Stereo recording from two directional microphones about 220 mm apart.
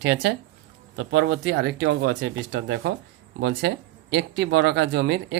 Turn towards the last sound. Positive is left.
turn(degrees=-55)  # may be behind; listen again after turning